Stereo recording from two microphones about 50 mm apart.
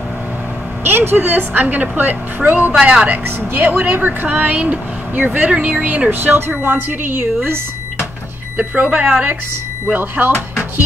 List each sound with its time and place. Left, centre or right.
0.8 s speech: right
1.2 s speech: right
2.8 s a woman's voice: right
3.3 s speech: right
6.0 s speech: right
8.5 s speech: right